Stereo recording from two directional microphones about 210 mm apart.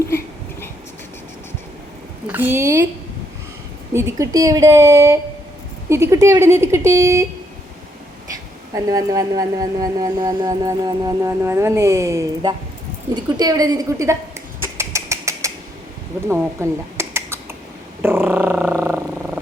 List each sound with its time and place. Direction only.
2.2 s speech: 10° right (ahead or behind)
3.9 s speech: 15° right (ahead or behind)
8.7 s speech: 15° right (ahead or behind)
13.1 s a sound: 20° right (ahead or behind)
18.0 s purr: 10° right (ahead or behind)
18.6 s a sound: 10° right (ahead or behind)